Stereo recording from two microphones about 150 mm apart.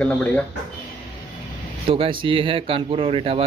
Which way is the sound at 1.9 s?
35° right (ahead or behind).